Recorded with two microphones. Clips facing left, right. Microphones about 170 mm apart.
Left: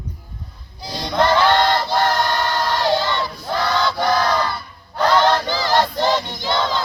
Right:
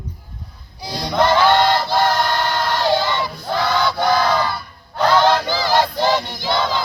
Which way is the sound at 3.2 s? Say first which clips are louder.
Right 1 dB; 5° right (ahead or behind).